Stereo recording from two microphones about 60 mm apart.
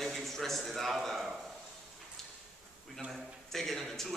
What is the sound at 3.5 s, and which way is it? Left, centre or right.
Speech, centre.